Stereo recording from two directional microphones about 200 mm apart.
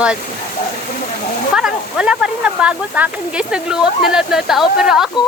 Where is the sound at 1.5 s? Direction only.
5° right (ahead or behind).